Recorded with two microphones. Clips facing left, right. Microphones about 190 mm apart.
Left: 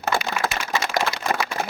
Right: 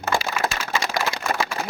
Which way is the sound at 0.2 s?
30° right (ahead or behind).